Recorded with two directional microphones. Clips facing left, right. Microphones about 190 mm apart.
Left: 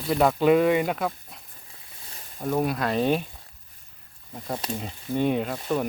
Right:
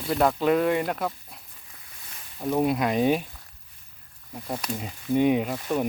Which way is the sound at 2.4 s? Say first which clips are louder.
Right 2 dB; 10° right (ahead or behind).